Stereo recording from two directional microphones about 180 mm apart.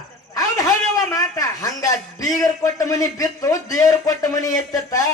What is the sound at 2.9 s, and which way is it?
A man's voice, 20° left (ahead or behind).